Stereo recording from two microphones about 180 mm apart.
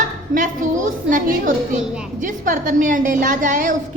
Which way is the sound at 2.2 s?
45° right (ahead or behind).